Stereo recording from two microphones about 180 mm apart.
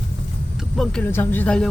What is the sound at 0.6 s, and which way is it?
Speech, centre (ahead or behind).